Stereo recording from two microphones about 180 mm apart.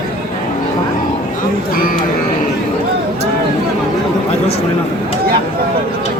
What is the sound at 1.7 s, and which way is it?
Speech, 50° left (ahead or behind).